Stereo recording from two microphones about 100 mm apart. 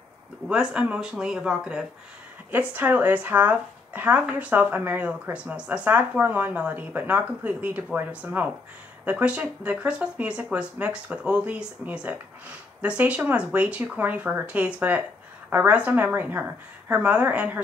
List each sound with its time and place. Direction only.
0.5 s speech: 10° right (ahead or behind)
2.5 s speech: 20° right (ahead or behind)